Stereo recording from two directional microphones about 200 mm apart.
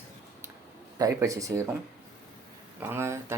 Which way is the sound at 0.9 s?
15° right (ahead or behind).